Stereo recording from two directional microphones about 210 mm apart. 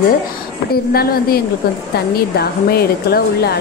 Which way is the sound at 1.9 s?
50° left (ahead or behind).